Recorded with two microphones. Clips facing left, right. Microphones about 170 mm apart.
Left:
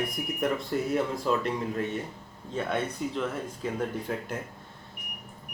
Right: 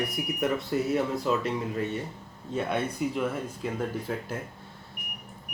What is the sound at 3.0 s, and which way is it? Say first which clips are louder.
Speech: right 3 dB; 10° right (ahead or behind).